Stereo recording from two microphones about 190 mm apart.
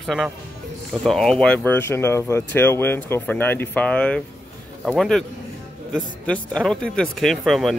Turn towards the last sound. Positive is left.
turn(degrees=0)  # may be behind; listen again after turning